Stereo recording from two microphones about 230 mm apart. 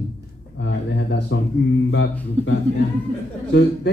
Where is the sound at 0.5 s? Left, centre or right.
Left.